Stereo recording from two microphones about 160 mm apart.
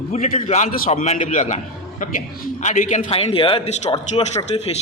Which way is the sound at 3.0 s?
35° left (ahead or behind).